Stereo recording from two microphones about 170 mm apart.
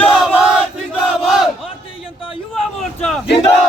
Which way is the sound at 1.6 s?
30° left (ahead or behind).